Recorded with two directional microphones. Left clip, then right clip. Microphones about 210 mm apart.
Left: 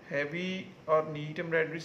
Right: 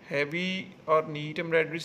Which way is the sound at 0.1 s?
40° right (ahead or behind).